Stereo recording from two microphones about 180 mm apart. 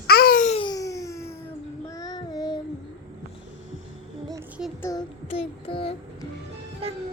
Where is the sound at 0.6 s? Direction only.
20° left (ahead or behind).